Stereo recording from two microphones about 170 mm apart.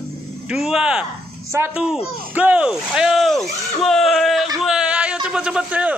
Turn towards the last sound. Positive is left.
turn(degrees=-5)  # may be behind; listen again after turning